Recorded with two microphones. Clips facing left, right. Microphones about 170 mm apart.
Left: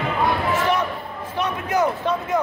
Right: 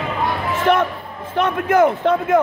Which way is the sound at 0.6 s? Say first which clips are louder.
Right 5 dB; 50° right (ahead or behind).